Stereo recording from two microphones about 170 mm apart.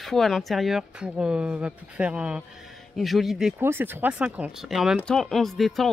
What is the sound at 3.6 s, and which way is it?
Speech, 10° right (ahead or behind).